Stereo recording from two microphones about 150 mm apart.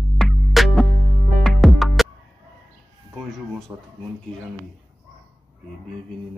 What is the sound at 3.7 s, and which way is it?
Speech, 15° right (ahead or behind).